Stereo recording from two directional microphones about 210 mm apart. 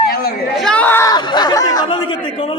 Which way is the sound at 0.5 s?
5° left (ahead or behind).